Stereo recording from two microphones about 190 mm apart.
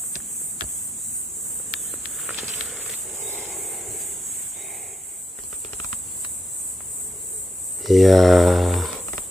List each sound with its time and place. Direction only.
1.9 s walk: centre (ahead or behind)
2.4 s a sound: centre (ahead or behind)
7.8 s speech: centre (ahead or behind)